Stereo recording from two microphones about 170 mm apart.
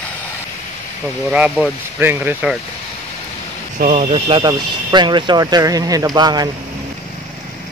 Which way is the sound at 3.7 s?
40° right (ahead or behind).